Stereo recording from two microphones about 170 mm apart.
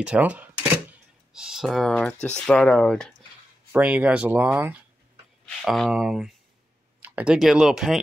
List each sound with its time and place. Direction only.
0.0 s speech: 5° right (ahead or behind)
3.7 s speech: 5° right (ahead or behind)